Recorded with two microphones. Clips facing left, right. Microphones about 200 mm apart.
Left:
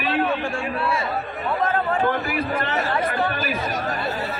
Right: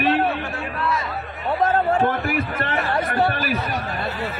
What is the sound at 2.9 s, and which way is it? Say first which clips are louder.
Speech: right 4 dB; 40° right (ahead or behind).